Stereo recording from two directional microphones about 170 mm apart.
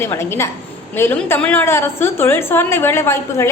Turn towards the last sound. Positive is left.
turn(degrees=15)  # may be behind; listen again after turning